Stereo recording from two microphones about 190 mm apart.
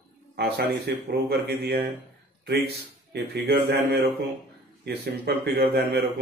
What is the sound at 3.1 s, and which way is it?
Speech, 55° right (ahead or behind).